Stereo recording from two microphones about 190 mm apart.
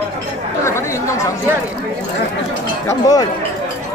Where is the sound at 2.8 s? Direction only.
20° left (ahead or behind).